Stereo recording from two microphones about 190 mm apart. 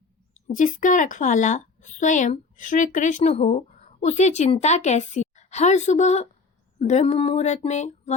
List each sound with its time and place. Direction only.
0.5 s a woman's voice: 45° left (ahead or behind)